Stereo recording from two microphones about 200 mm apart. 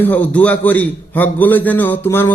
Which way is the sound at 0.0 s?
10° left (ahead or behind).